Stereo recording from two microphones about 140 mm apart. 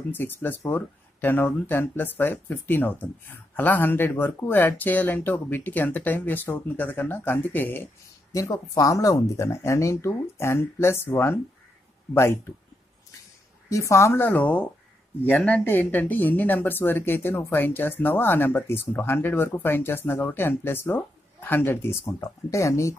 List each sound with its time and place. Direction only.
0.1 s speech: 15° left (ahead or behind)
13.7 s speech: 20° left (ahead or behind)